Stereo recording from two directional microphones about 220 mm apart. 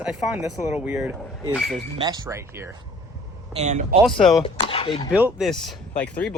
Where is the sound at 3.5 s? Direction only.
30° right (ahead or behind).